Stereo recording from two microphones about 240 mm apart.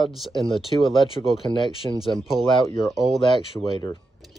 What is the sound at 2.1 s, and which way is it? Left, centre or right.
Speech, centre.